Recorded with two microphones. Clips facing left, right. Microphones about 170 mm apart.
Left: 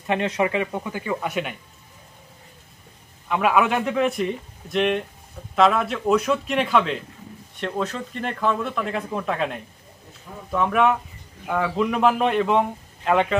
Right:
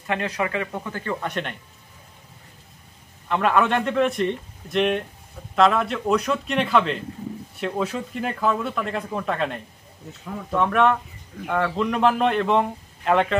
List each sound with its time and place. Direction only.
0.0 s speech: 20° left (ahead or behind); by 1.6 s 5° left (ahead or behind)
3.3 s speech: 5° left (ahead or behind)